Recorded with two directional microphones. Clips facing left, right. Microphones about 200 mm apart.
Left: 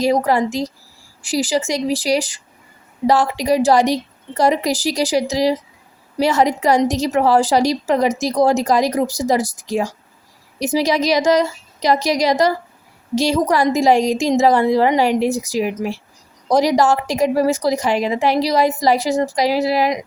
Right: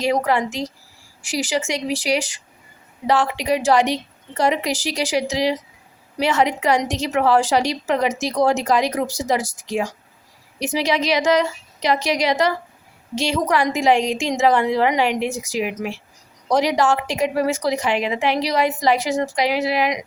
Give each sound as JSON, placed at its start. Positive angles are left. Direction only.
{"t": 0.0, "sound": "a woman's voice", "side_deg": 40}